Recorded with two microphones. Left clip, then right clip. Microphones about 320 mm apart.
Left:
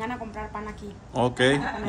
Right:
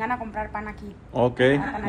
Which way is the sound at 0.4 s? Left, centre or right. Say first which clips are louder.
Right 4 dB; centre.